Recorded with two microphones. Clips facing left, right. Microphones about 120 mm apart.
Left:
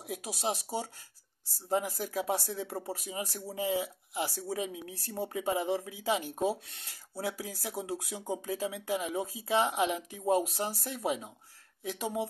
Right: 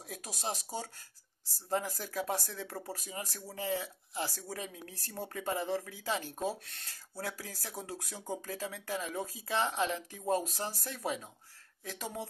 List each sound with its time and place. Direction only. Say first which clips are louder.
0.1 s speech: left 5 dB; 20° left (ahead or behind)